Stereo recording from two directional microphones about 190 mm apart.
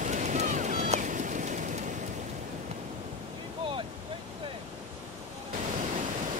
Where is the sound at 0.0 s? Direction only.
40° right (ahead or behind).